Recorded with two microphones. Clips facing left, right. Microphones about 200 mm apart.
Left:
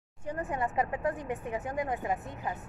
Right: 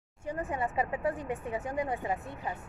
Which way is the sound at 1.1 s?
15° left (ahead or behind).